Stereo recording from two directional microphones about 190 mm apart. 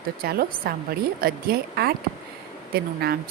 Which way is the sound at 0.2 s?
50° right (ahead or behind).